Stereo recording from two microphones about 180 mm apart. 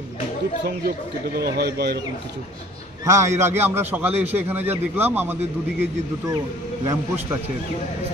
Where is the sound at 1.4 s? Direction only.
65° right (ahead or behind).